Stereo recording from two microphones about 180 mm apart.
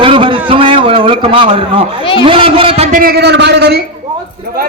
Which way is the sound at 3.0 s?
60° right (ahead or behind).